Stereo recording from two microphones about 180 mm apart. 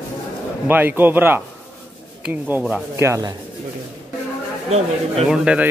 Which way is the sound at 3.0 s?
20° right (ahead or behind).